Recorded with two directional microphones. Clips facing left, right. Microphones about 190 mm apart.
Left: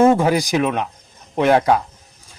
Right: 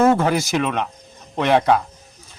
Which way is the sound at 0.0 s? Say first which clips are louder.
Left 2 dB; 10° left (ahead or behind).